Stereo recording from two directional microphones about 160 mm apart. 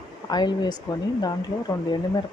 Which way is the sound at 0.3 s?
25° left (ahead or behind).